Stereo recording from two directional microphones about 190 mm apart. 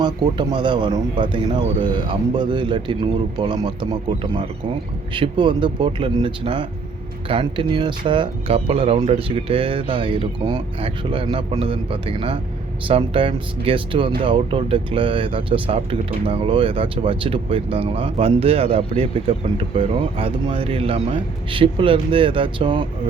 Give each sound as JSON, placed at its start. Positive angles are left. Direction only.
{"t": 0.0, "sound": "speech", "side_deg": -20}